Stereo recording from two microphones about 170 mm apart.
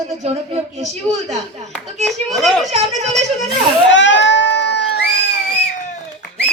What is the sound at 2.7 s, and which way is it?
Speech, 40° right (ahead or behind).